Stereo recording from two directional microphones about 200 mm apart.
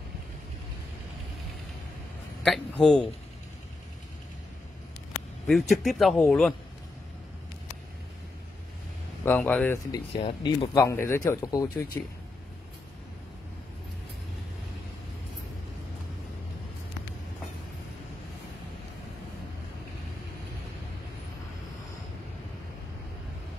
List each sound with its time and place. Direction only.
2.4 s speech: centre (ahead or behind)
5.5 s speech: centre (ahead or behind)
9.2 s speech: 10° left (ahead or behind)
10.2 s speech: 25° left (ahead or behind)